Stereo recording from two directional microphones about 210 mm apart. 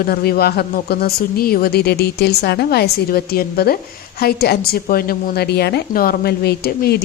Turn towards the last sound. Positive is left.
turn(degrees=50)  # may be behind; listen again after turning